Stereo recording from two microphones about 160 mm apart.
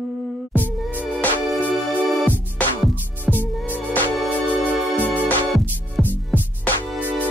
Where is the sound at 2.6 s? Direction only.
10° left (ahead or behind).